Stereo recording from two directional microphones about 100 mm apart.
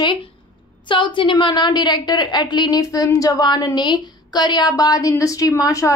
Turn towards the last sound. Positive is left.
turn(degrees=35)  # may be behind; listen again after turning